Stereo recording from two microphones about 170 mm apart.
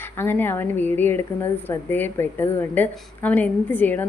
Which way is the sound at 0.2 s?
10° left (ahead or behind).